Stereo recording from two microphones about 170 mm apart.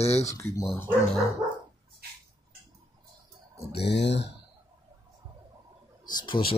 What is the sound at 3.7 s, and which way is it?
Speech, 85° left.